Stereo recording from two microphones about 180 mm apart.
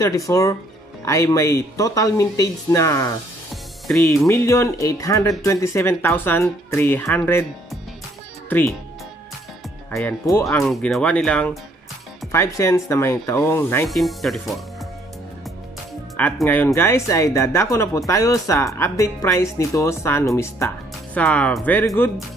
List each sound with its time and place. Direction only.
0.3 s speech: 20° left (ahead or behind)
3.8 s speech: centre (ahead or behind)
4.3 s speech: 15° left (ahead or behind)
8.5 s speech: 10° left (ahead or behind)
9.8 s speech: 10° left (ahead or behind)
12.3 s speech: 15° left (ahead or behind)
13.8 s speech: centre (ahead or behind)
16.2 s speech: 10° left (ahead or behind)